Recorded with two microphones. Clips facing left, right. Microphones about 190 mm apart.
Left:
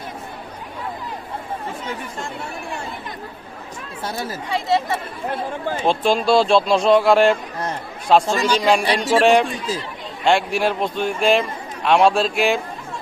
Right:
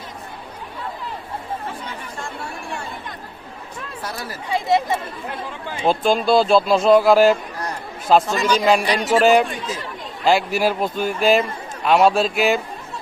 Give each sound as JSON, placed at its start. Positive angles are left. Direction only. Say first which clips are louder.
{"t": 4.0, "sound": "speech", "louder": "left 5 dB", "side_deg": 25}
{"t": 4.5, "sound": "speech", "louder": "right 2 dB", "side_deg": -15}
{"t": 5.8, "sound": "a man's voice", "louder": "right 1 dB", "side_deg": 0}
{"t": 8.3, "sound": "speech", "louder": "even", "side_deg": 30}
{"t": 8.5, "sound": "a man's voice", "louder": "right 2 dB", "side_deg": -5}